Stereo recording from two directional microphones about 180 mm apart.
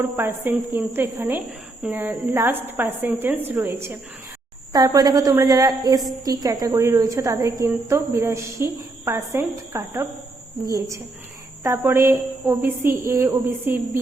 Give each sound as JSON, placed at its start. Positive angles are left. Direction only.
{"t": 0.0, "sound": "a woman's voice", "side_deg": -10}